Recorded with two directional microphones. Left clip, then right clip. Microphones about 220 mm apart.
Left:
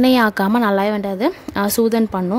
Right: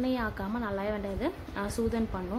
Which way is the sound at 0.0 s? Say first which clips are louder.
Left 17 dB; 50° left (ahead or behind).